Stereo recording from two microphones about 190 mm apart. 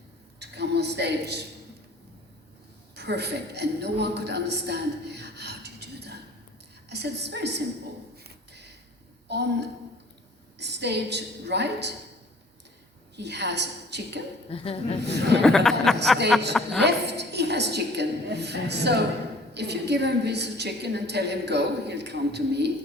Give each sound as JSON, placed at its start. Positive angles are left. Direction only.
{"t": 0.3, "sound": "a woman's voice", "side_deg": -60}
{"t": 2.9, "sound": "a woman's voice", "side_deg": -60}
{"t": 9.3, "sound": "a woman's voice", "side_deg": -60}
{"t": 13.1, "sound": "a woman's voice", "side_deg": -65}
{"t": 14.5, "sound": "speech", "side_deg": 30}
{"t": 15.0, "sound": "a woman's voice", "side_deg": -65}
{"t": 15.4, "sound": "speech", "side_deg": 0}
{"t": 16.8, "sound": "a woman's voice", "side_deg": -60}